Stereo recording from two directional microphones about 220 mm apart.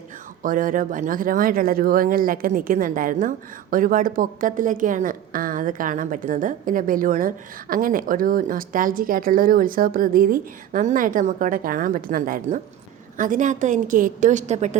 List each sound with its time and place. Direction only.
0.4 s speech: 40° right (ahead or behind)